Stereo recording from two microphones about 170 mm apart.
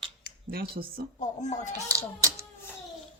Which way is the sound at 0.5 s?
60° right (ahead or behind).